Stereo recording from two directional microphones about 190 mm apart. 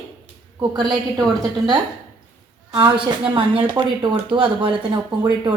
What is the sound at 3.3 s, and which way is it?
Speech, 25° right (ahead or behind).